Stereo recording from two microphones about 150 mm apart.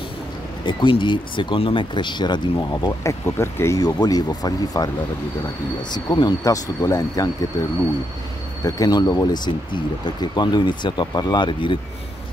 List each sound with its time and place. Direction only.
0.7 s speech: 35° left (ahead or behind)
5.9 s speech: 30° left (ahead or behind)
8.6 s speech: 25° left (ahead or behind)